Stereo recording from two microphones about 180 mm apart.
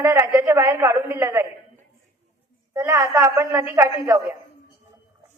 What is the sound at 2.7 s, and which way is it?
A woman's voice, 15° right (ahead or behind).